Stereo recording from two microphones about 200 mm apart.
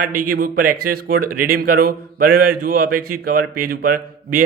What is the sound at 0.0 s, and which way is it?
Speech, 45° right (ahead or behind).